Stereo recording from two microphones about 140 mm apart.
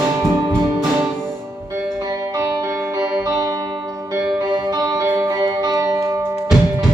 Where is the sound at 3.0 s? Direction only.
25° right (ahead or behind).